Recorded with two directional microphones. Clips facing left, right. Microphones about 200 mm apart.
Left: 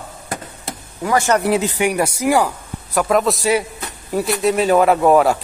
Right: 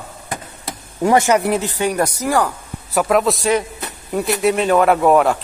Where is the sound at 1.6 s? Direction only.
10° left (ahead or behind).